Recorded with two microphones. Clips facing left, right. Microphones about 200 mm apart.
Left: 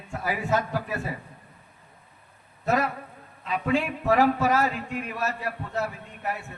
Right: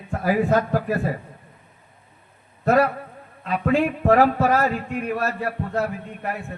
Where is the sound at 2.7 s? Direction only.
55° right (ahead or behind).